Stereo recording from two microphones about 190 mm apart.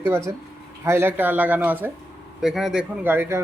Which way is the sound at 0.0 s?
15° right (ahead or behind).